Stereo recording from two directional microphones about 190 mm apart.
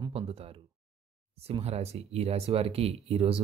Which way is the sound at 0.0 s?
30° right (ahead or behind).